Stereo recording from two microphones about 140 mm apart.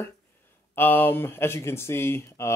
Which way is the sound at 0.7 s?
15° left (ahead or behind).